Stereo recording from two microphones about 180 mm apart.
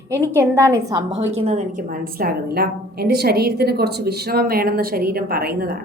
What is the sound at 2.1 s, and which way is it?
Speech, 60° right (ahead or behind).